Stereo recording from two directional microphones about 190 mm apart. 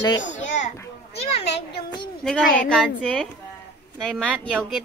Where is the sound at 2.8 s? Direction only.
5° left (ahead or behind).